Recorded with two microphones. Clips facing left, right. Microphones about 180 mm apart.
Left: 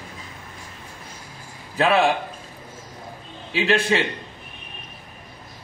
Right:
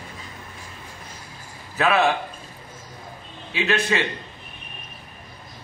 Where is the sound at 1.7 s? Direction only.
30° left (ahead or behind).